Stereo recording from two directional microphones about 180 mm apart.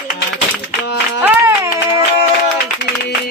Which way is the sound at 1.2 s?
15° right (ahead or behind).